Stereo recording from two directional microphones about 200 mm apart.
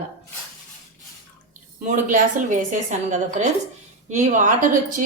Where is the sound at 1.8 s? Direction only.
40° right (ahead or behind).